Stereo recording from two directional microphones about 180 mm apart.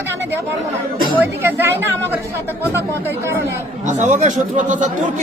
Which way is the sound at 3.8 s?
45° right (ahead or behind).